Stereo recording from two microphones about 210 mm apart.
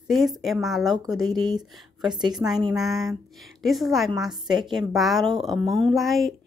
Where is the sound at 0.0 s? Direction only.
Centre (ahead or behind).